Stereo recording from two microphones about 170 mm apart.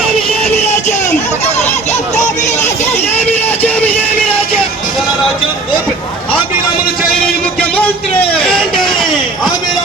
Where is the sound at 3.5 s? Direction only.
10° left (ahead or behind).